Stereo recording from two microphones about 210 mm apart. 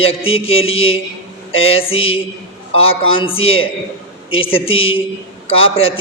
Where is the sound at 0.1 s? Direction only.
25° left (ahead or behind).